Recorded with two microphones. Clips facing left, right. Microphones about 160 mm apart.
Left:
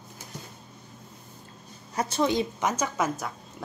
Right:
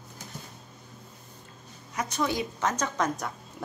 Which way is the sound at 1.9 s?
30° left (ahead or behind).